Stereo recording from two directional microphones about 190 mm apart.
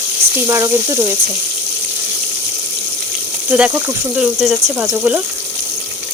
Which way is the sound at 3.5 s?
5° right (ahead or behind).